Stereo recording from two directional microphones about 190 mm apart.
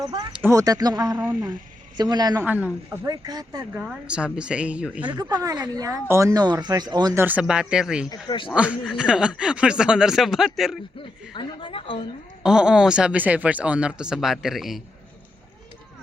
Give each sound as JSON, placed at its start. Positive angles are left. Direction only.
{"t": 0.0, "sound": "speech", "side_deg": -25}
{"t": 0.3, "sound": "speech", "side_deg": -15}
{"t": 1.1, "sound": "speech", "side_deg": -10}
{"t": 2.0, "sound": "speech", "side_deg": -20}
{"t": 2.4, "sound": "speech", "side_deg": -10}
{"t": 3.1, "sound": "speech", "side_deg": -20}
{"t": 3.8, "sound": "speech", "side_deg": -5}
{"t": 5.1, "sound": "speech", "side_deg": -20}
{"t": 8.1, "sound": "a woman's voice", "side_deg": 25}
{"t": 8.4, "sound": "speech", "side_deg": -5}
{"t": 11.3, "sound": "a woman's voice", "side_deg": 25}
{"t": 12.4, "sound": "speech", "side_deg": -5}